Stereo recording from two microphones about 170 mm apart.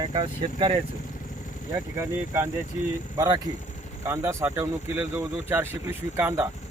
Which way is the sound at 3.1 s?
20° right (ahead or behind).